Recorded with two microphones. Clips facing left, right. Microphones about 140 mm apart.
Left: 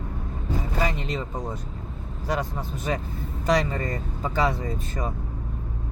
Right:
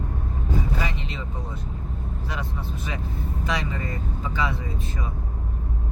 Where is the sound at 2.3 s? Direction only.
45° left (ahead or behind).